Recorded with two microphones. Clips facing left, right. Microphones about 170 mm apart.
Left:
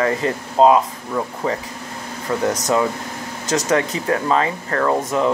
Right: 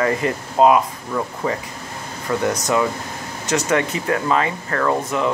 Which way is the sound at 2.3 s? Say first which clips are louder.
Even; 20° left (ahead or behind).